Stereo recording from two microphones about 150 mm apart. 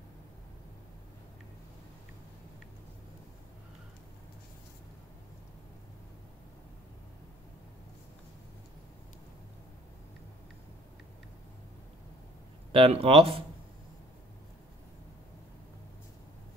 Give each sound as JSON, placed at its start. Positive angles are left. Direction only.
{"t": 12.7, "sound": "speech", "side_deg": -40}